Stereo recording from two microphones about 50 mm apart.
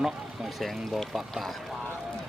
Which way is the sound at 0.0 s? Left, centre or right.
Centre.